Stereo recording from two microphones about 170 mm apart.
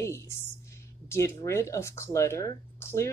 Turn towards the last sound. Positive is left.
turn(degrees=15)  # may be behind; listen again after turning